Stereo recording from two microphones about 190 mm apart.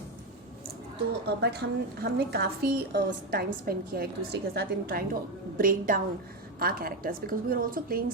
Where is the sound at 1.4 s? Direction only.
60° right (ahead or behind).